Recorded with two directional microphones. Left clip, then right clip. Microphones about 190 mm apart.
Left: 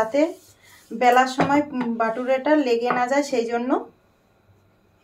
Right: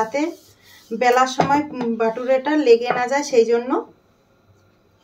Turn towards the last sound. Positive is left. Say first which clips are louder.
# right 6 dB
turn(degrees=20)  # may be behind; listen again after turning